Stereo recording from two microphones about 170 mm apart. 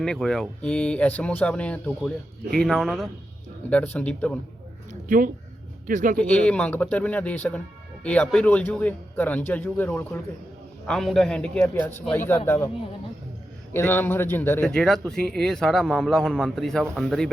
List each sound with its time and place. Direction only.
0.0 s speech: 5° left (ahead or behind)
4.9 s speech: 50° right (ahead or behind)
6.1 s speech: 5° left (ahead or behind)
13.7 s speech: 10° left (ahead or behind)